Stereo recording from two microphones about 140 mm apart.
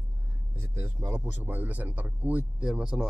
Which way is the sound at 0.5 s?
15° right (ahead or behind).